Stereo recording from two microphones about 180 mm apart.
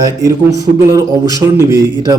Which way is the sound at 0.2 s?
20° right (ahead or behind).